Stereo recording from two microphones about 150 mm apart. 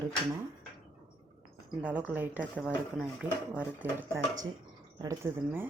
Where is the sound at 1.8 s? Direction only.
10° right (ahead or behind).